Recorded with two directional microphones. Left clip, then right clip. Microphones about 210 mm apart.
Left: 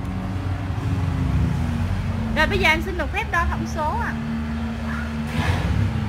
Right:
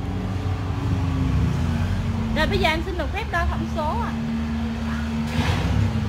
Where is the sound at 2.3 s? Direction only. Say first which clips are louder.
Left 3 dB; 25° left (ahead or behind).